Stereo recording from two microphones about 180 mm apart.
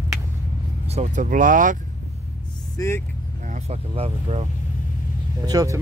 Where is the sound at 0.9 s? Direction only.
45° right (ahead or behind).